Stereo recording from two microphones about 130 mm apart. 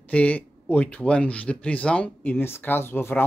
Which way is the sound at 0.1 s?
10° left (ahead or behind).